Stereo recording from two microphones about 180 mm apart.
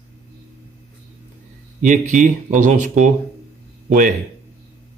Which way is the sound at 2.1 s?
45° right (ahead or behind).